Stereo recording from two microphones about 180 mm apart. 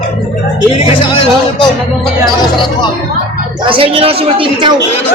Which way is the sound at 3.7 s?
30° right (ahead or behind).